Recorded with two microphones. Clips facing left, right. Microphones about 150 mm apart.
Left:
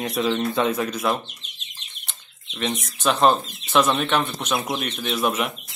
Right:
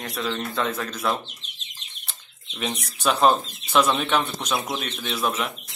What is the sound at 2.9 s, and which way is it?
Speech, 10° right (ahead or behind).